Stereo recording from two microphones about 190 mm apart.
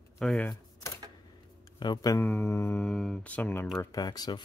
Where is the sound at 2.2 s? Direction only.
10° left (ahead or behind).